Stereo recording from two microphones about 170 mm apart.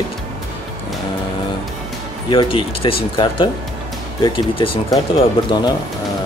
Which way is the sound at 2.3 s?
30° left (ahead or behind).